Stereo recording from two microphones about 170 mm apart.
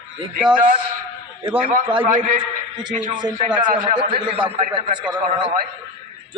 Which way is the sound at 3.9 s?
30° right (ahead or behind).